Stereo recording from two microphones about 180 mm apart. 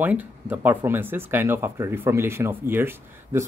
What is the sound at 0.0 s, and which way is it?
Speech, 10° right (ahead or behind).